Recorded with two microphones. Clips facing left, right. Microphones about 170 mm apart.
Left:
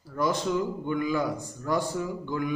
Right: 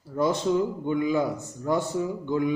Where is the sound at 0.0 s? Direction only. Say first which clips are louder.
Right 3 dB; 25° right (ahead or behind).